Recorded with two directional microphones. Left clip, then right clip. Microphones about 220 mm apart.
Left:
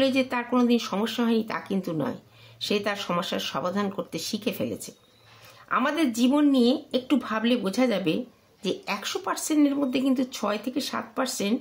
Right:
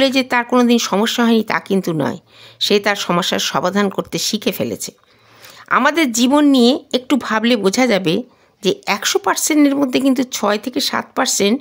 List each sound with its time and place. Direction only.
0.0 s speech: 45° right (ahead or behind)